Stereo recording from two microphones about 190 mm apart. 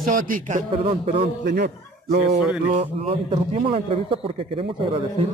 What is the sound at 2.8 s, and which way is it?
A man's voice, 40° right (ahead or behind).